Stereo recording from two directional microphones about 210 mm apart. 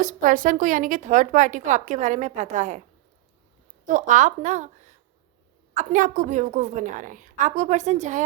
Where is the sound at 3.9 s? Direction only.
35° right (ahead or behind).